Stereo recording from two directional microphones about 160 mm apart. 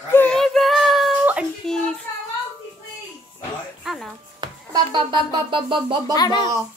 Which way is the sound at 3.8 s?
Centre (ahead or behind).